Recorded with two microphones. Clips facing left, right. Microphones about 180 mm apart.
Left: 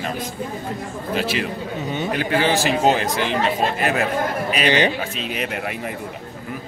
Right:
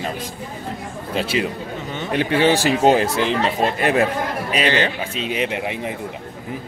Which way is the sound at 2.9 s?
30° right (ahead or behind).